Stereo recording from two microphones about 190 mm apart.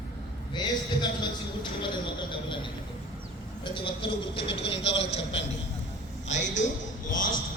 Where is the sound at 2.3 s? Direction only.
25° left (ahead or behind).